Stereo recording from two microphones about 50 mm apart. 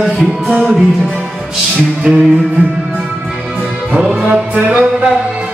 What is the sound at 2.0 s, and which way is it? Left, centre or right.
Music, right.